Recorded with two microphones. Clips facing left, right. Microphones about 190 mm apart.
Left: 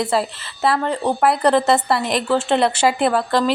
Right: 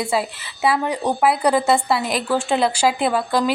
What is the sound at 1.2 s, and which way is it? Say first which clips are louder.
A woman's voice: left 2 dB; 5° right (ahead or behind).